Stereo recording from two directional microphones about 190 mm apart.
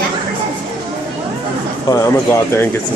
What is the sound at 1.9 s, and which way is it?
Speech, 15° left (ahead or behind).